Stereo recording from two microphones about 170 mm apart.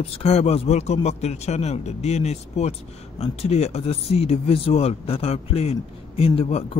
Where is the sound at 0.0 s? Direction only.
35° left (ahead or behind).